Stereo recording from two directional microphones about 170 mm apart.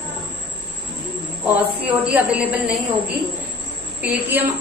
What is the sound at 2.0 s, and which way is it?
Speech, 5° right (ahead or behind).